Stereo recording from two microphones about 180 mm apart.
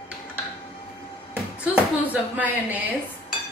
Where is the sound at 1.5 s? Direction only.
5° right (ahead or behind).